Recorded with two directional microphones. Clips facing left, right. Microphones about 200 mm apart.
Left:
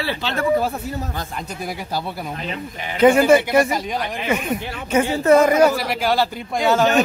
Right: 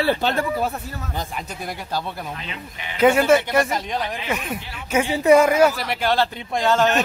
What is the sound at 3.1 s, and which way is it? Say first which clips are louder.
Speech: left 3 dB; 10° left (ahead or behind).